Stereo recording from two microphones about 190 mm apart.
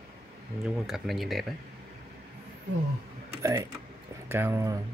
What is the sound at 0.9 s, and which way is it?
Speech, centre (ahead or behind).